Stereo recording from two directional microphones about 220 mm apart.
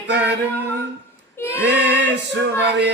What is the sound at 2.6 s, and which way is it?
Mantra, 50° right (ahead or behind).